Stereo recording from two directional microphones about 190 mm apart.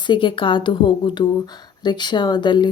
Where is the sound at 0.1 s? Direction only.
25° left (ahead or behind).